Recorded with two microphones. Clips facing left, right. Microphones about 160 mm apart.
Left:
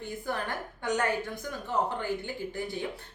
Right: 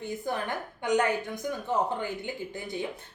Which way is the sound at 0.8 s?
15° right (ahead or behind).